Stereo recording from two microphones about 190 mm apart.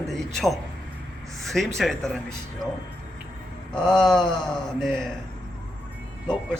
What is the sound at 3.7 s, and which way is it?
A man's voice, 5° left (ahead or behind).